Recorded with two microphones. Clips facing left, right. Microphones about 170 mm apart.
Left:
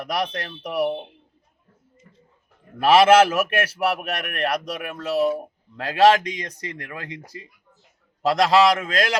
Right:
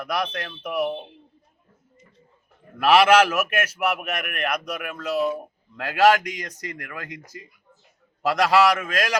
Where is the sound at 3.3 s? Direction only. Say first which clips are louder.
Left 2 dB; 30° left (ahead or behind).